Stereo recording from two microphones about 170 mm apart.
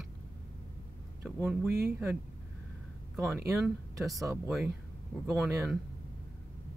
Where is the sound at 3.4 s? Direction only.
10° right (ahead or behind).